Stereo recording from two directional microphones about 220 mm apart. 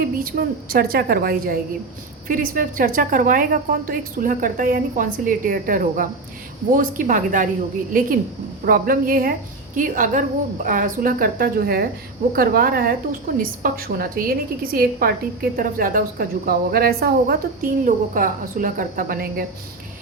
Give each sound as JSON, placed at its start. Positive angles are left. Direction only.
{"t": 0.2, "sound": "a woman's voice", "side_deg": -40}
{"t": 8.6, "sound": "a woman's voice", "side_deg": -40}